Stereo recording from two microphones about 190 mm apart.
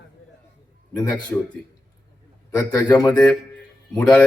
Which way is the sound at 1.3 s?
15° left (ahead or behind).